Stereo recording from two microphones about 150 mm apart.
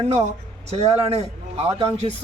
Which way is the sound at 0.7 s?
45° right (ahead or behind).